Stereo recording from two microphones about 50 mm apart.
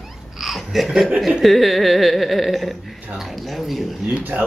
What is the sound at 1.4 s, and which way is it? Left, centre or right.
Speech, centre.